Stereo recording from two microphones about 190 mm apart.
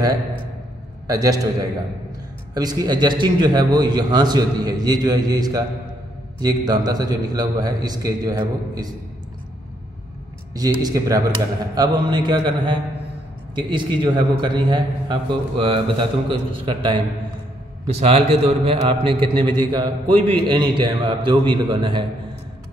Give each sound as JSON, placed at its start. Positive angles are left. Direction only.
{"t": 1.0, "sound": "a man's voice", "side_deg": -20}
{"t": 2.5, "sound": "a man's voice", "side_deg": -20}
{"t": 10.5, "sound": "a man's voice", "side_deg": -20}
{"t": 20.1, "sound": "a man's voice", "side_deg": 10}
{"t": 20.4, "sound": "a man's voice", "side_deg": -25}